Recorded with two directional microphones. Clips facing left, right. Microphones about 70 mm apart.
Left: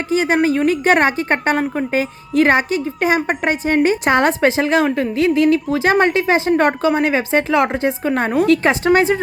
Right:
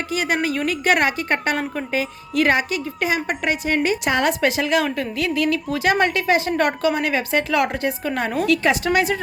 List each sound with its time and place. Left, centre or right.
0.1 s a woman's voice: left